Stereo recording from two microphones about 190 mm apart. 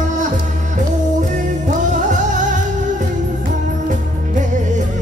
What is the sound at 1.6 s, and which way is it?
Music, 40° right (ahead or behind).